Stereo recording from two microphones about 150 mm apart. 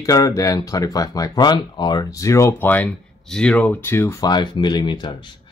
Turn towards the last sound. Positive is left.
turn(degrees=30)  # may be behind; listen again after turning